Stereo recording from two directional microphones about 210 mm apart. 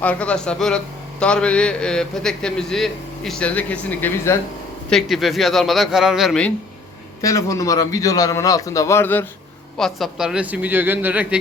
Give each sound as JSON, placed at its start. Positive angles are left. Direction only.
{"t": 0.0, "sound": "a man's voice", "side_deg": 5}
{"t": 7.2, "sound": "a man's voice", "side_deg": 15}